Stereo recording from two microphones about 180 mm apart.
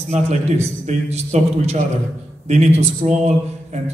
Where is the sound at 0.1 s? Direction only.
40° right (ahead or behind).